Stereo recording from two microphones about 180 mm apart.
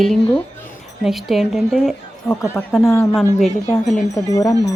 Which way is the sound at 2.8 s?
15° left (ahead or behind).